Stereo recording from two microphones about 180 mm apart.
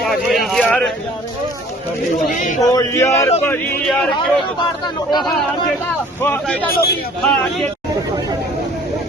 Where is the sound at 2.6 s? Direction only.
20° left (ahead or behind).